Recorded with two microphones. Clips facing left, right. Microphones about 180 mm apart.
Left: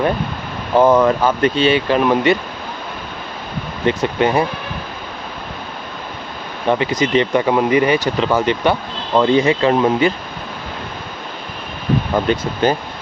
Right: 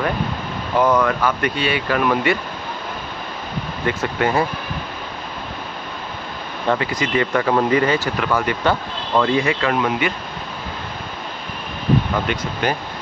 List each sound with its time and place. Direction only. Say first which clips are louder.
0.7 s speech: left 5 dB; 25° left (ahead or behind)
3.8 s speech: left 5 dB; 20° left (ahead or behind)
6.7 s speech: left 4 dB; 20° left (ahead or behind)
12.3 s speech: left 7 dB; 35° left (ahead or behind)